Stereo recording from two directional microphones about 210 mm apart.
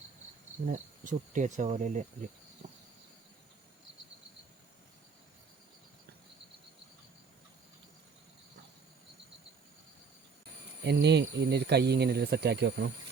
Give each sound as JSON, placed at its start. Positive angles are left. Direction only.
{"t": 0.6, "sound": "speech", "side_deg": -35}
{"t": 10.8, "sound": "speech", "side_deg": -55}